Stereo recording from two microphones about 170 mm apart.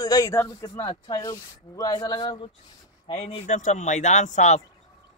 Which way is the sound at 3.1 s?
40° left (ahead or behind).